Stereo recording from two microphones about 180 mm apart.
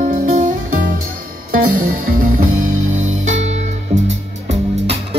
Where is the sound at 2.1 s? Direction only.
50° right (ahead or behind).